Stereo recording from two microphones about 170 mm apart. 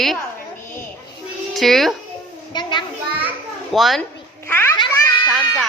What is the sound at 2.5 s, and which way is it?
Speech, 25° left (ahead or behind).